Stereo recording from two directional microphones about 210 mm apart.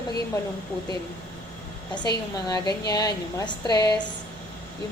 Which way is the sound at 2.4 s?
20° left (ahead or behind).